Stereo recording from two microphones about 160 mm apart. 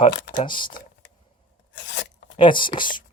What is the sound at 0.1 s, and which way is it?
Speech, 80° left.